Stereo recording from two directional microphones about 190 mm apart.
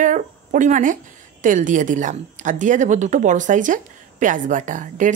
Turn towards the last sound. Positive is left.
turn(degrees=-40)  # may be behind; listen again after turning